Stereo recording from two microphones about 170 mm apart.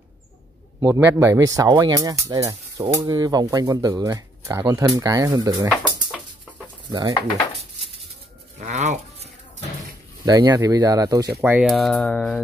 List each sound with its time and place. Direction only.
0.7 s speech: 15° right (ahead or behind)
8.5 s toothbrush: 45° right (ahead or behind)
10.2 s speech: 20° right (ahead or behind)
11.5 s speech: centre (ahead or behind)